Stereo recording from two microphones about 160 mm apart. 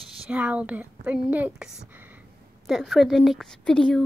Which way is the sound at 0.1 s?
10° right (ahead or behind).